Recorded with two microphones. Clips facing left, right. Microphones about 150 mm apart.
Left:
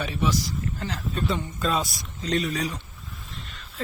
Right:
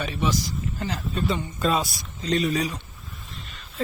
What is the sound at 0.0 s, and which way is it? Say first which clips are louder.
A man's voice: even; centre (ahead or behind).